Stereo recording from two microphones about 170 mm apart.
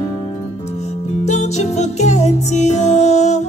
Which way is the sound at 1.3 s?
45° left (ahead or behind).